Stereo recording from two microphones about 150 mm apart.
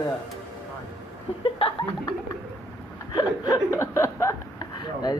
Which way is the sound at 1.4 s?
35° left (ahead or behind).